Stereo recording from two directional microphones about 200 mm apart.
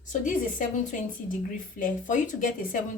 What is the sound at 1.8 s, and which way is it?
Speech, 40° left (ahead or behind).